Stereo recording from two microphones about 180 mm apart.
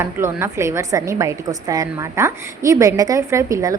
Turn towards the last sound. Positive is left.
turn(degrees=-20)  # may be behind; listen again after turning